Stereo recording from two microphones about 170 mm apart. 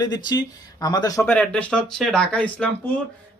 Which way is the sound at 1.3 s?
5° left (ahead or behind).